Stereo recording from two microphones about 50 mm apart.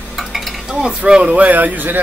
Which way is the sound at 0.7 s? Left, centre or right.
Centre.